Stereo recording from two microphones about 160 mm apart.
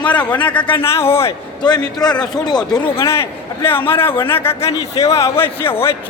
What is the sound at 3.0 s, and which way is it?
Speech, 15° left (ahead or behind).